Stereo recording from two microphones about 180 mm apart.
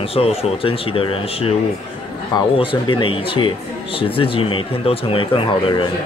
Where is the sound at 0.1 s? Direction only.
35° left (ahead or behind).